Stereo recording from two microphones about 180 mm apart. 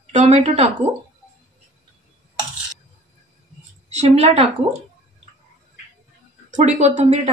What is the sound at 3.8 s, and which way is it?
Speech, 40° right (ahead or behind).